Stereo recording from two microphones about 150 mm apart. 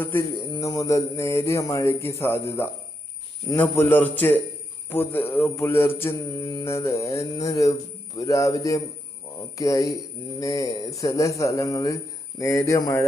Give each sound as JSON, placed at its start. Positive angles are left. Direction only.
{"t": 0.0, "sound": "a man's voice", "side_deg": 15}
{"t": 0.5, "sound": "mantra", "side_deg": 25}
{"t": 3.5, "sound": "a man's voice", "side_deg": 15}
{"t": 4.9, "sound": "mantra", "side_deg": 15}